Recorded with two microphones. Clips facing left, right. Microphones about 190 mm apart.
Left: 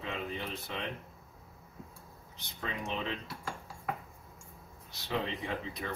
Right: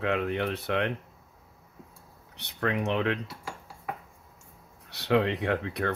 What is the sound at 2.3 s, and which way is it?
Speech, 70° right (ahead or behind).